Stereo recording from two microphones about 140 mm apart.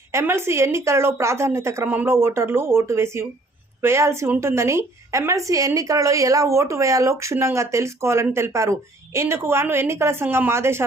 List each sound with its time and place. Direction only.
0.1 s a woman's voice: 15° right (ahead or behind)